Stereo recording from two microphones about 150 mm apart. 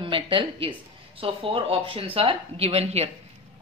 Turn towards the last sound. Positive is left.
turn(degrees=-45)  # may be behind; listen again after turning